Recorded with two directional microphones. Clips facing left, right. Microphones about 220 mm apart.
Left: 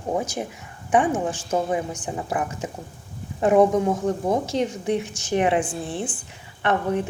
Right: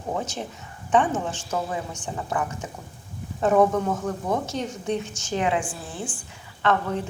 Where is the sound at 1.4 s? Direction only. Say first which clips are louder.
Left 5 dB; 30° left (ahead or behind).